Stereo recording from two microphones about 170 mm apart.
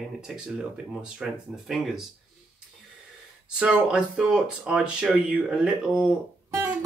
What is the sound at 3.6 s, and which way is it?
Speech, 5° right (ahead or behind).